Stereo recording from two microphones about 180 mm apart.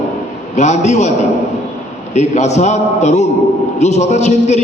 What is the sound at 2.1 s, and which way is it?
A man's voice, 40° left (ahead or behind).